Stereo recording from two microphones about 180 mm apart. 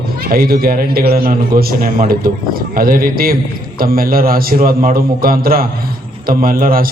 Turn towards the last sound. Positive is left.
turn(degrees=-50)  # may be behind; listen again after turning